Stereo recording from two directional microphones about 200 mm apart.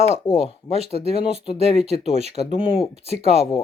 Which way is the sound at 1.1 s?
30° left (ahead or behind).